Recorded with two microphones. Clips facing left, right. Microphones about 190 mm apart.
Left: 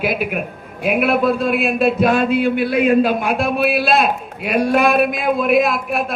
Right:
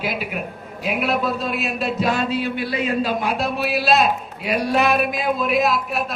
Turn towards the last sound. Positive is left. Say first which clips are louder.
# left 2 dB
turn(degrees=55)  # may be behind; listen again after turning